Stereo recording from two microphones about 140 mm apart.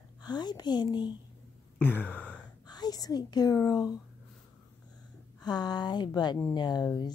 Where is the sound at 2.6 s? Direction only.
30° left (ahead or behind).